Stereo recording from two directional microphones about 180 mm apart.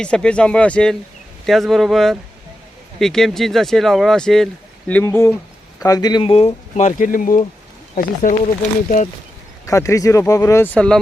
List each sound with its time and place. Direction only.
0.0 s speech: 5° left (ahead or behind); by 8.4 s 50° left (ahead or behind)
9.6 s speech: 15° left (ahead or behind)
10.8 s speech: 5° left (ahead or behind)